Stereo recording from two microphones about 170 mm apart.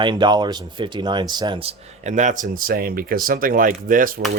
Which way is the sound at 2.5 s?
60° right (ahead or behind).